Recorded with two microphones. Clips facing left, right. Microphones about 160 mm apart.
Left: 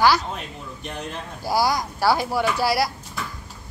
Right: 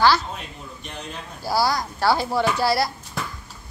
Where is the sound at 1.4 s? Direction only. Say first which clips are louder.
Even; 15° left (ahead or behind).